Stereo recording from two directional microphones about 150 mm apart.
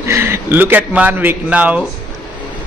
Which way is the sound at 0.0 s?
15° right (ahead or behind).